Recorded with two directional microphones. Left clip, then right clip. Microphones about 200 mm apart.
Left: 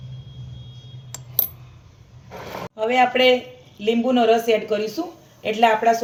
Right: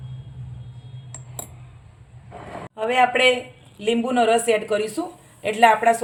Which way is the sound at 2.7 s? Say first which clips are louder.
Left 1 dB; 50° right (ahead or behind).